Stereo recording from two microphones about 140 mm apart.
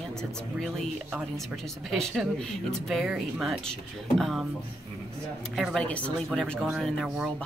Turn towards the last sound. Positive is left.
turn(degrees=0)  # may be behind; listen again after turning